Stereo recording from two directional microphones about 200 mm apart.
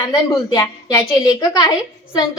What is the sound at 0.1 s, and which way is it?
A woman's voice, 15° left (ahead or behind).